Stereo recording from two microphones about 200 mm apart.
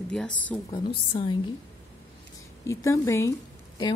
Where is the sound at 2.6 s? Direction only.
15° left (ahead or behind).